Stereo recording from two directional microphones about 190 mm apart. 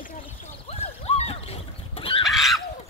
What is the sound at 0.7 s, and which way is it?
Neigh, 35° left (ahead or behind).